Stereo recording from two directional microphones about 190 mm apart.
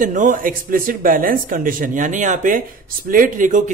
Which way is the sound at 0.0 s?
40° right (ahead or behind).